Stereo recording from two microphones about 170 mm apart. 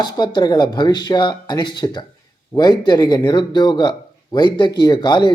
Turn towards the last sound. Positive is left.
turn(degrees=25)  # may be behind; listen again after turning